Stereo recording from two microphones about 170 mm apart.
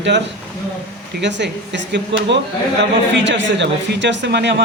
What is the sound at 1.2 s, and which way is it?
Speech, 90° right.